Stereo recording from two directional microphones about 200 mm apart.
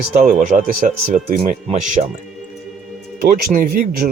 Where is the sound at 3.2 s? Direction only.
45° right (ahead or behind).